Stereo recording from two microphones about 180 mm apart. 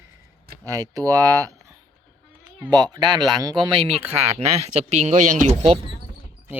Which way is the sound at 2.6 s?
20° right (ahead or behind).